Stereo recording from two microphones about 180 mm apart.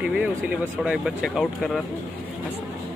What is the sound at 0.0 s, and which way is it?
Speech, 5° right (ahead or behind).